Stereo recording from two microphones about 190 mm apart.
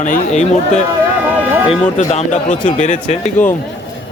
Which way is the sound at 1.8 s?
35° left (ahead or behind).